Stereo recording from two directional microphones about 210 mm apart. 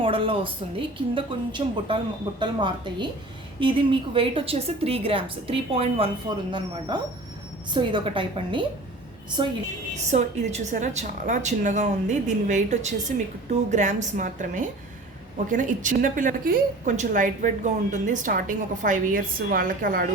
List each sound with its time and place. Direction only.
0.0 s a woman's voice: 25° right (ahead or behind)
10.1 s a woman's voice: 35° right (ahead or behind)